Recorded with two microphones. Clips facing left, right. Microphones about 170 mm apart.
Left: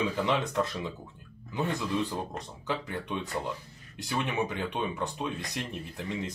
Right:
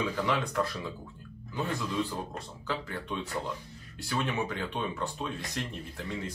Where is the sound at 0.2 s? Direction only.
20° left (ahead or behind).